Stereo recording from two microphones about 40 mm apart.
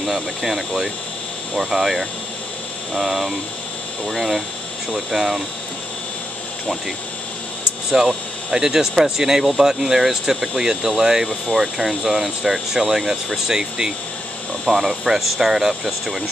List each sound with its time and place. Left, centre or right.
0.0 s speech: centre
8.5 s speech: centre